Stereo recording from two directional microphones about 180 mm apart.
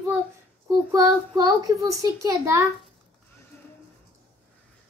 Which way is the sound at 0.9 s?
25° right (ahead or behind).